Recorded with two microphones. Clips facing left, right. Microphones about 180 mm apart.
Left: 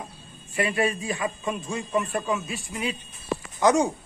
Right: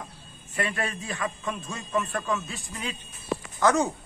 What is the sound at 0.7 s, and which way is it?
Speech, 5° left (ahead or behind).